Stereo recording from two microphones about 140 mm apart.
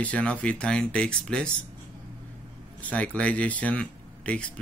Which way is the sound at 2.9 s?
10° left (ahead or behind).